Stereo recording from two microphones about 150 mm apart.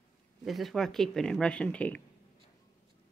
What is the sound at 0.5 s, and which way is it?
Speech, centre (ahead or behind).